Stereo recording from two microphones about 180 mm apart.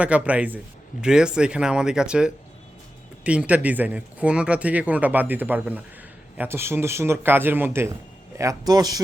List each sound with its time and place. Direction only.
0.0 s speech: 5° right (ahead or behind)